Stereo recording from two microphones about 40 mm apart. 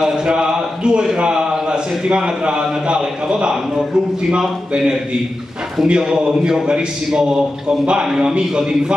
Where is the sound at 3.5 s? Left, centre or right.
Centre.